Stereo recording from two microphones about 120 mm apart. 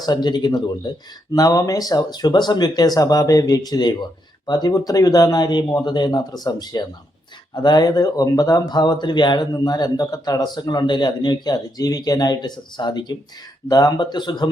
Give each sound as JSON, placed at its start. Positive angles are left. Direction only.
{"t": 0.0, "sound": "speech", "side_deg": 35}